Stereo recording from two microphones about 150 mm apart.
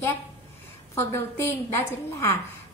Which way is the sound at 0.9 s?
20° left (ahead or behind).